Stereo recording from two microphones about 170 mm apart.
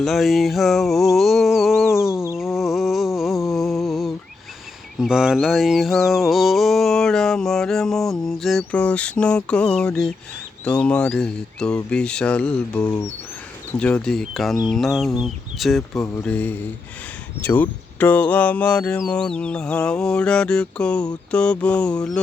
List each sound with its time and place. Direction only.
0.0 s music: centre (ahead or behind)
2.6 s a sound: centre (ahead or behind)
3.2 s mantra: centre (ahead or behind)
12.8 s speech: 20° left (ahead or behind)
13.7 s mantra: 5° left (ahead or behind)
17.4 s speech: 10° left (ahead or behind)